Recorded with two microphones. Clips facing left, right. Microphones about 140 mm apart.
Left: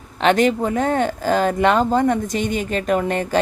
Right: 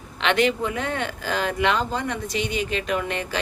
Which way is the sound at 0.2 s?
40° left (ahead or behind).